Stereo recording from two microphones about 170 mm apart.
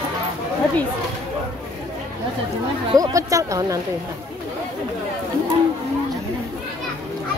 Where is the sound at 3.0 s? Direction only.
20° right (ahead or behind).